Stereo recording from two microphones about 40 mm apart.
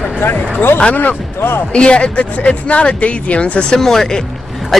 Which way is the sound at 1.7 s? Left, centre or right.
Left.